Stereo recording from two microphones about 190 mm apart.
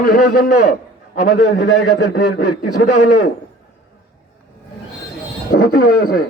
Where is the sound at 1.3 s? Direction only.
70° left (ahead or behind).